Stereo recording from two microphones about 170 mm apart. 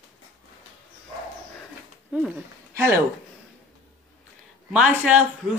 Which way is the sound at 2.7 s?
15° right (ahead or behind).